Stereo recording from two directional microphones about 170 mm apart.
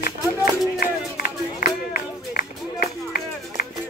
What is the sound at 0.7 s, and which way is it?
Run, 60° left (ahead or behind).